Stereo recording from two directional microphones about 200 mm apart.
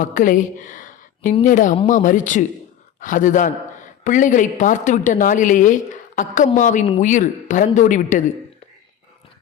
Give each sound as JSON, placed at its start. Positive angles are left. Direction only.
{"t": 0.0, "sound": "a woman's voice", "side_deg": 40}